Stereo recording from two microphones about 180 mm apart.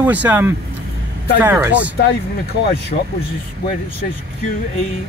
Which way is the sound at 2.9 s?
45° left (ahead or behind).